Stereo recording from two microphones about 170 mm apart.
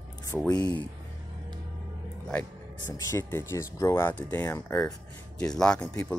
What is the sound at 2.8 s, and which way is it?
Speech, 20° left (ahead or behind).